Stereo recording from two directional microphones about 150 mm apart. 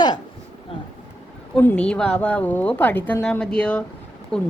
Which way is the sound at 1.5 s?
10° left (ahead or behind).